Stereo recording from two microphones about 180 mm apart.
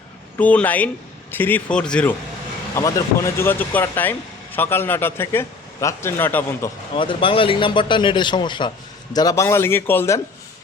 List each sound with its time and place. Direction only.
0.3 s speech: 10° left (ahead or behind)
2.7 s speech: 15° left (ahead or behind)
6.9 s speech: 30° left (ahead or behind); by 10.2 s 10° left (ahead or behind)